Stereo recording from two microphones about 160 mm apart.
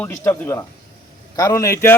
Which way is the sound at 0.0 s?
15° left (ahead or behind).